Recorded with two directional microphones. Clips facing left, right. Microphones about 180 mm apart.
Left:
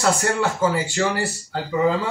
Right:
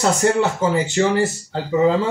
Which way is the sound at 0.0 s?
20° right (ahead or behind).